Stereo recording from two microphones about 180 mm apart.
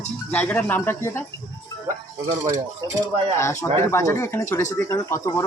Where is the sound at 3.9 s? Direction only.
15° left (ahead or behind).